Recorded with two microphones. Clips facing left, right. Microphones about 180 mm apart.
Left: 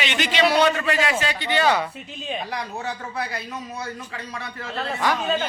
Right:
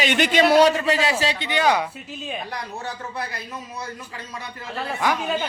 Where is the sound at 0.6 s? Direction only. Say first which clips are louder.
Right 2 dB; 30° right (ahead or behind).